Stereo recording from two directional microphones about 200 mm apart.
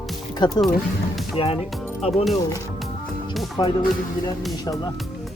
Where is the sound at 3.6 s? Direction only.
20° left (ahead or behind).